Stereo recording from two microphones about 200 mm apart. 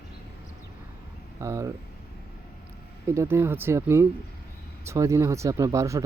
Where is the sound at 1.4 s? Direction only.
15° right (ahead or behind).